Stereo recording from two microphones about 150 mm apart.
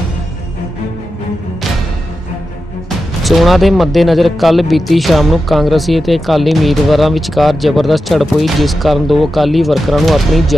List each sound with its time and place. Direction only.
3.3 s speech: centre (ahead or behind)